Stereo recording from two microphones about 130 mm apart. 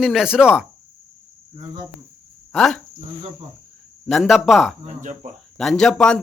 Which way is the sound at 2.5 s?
5° left (ahead or behind).